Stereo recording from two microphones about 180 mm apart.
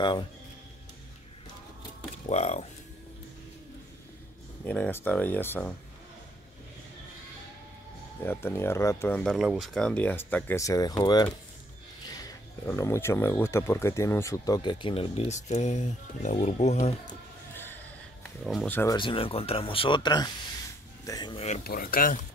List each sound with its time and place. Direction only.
0.0 s speech: 25° left (ahead or behind)
2.2 s speech: 40° left (ahead or behind)
4.6 s speech: 10° left (ahead or behind)
8.2 s speech: 10° left (ahead or behind)
9.2 s speech: centre (ahead or behind); by 11.3 s 20° left (ahead or behind)
12.6 s speech: 15° left (ahead or behind); by 17.1 s 40° left (ahead or behind)
18.4 s speech: centre (ahead or behind)
18.7 s speech: 10° left (ahead or behind)
18.9 s speech: 30° left (ahead or behind)
21.6 s speech: 55° left (ahead or behind)